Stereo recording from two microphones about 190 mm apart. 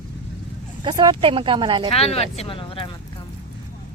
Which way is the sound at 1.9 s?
30° left (ahead or behind).